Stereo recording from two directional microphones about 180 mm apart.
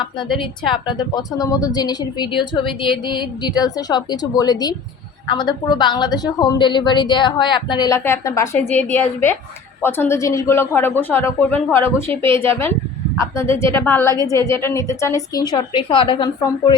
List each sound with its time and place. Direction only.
0.9 s a woman's voice: 25° left (ahead or behind)